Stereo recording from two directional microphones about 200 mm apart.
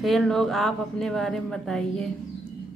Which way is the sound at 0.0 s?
Centre (ahead or behind).